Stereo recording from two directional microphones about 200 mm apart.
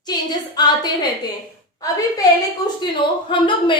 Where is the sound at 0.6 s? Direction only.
20° left (ahead or behind).